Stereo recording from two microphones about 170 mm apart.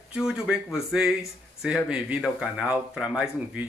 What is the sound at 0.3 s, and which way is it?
Speech, 5° right (ahead or behind).